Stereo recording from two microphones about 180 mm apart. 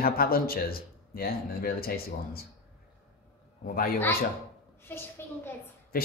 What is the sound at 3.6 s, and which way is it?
Speech, 50° left (ahead or behind).